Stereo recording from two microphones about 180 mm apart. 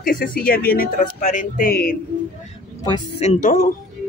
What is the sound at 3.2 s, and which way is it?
Speech, 45° left (ahead or behind).